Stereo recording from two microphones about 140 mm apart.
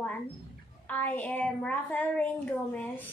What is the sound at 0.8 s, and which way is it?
A woman's voice, 10° left (ahead or behind).